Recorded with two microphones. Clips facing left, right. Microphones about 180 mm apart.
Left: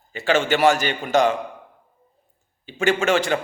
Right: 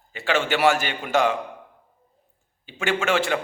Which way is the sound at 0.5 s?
40° left (ahead or behind).